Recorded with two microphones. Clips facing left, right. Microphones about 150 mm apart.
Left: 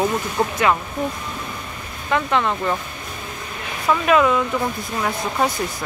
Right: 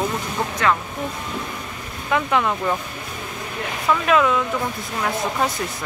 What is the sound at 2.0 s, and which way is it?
Speech, 5° right (ahead or behind).